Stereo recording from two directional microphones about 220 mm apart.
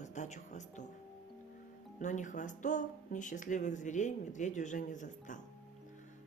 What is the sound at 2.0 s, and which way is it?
Speech, 35° left (ahead or behind).